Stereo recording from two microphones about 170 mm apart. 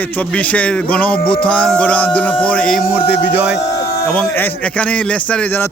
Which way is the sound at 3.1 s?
5° right (ahead or behind).